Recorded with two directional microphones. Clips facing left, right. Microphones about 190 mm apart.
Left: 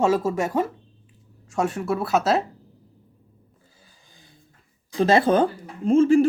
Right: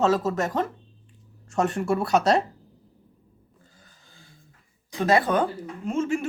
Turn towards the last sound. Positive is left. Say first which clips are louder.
# left 10 dB
turn(degrees=35)  # may be behind; listen again after turning